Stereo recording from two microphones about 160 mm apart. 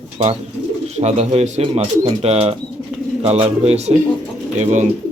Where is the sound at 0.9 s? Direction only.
40° right (ahead or behind).